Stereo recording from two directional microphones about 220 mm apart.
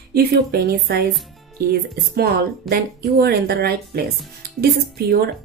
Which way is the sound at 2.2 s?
45° right (ahead or behind).